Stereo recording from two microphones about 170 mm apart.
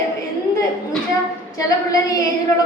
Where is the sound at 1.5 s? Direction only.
20° left (ahead or behind).